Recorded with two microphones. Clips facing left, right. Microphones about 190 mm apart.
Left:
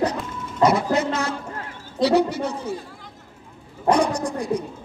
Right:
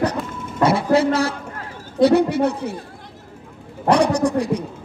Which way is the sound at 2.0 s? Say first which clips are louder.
Right 4 dB; 55° right (ahead or behind).